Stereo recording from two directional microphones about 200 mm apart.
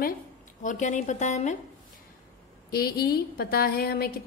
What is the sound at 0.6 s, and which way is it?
A woman's voice, 40° left (ahead or behind).